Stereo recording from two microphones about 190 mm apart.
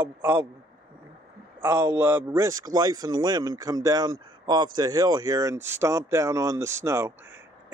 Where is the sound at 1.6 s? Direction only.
10° right (ahead or behind).